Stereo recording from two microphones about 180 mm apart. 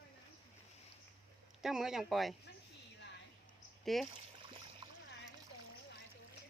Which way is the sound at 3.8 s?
Centre (ahead or behind).